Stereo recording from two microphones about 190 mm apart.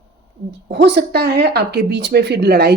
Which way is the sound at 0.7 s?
65° right (ahead or behind).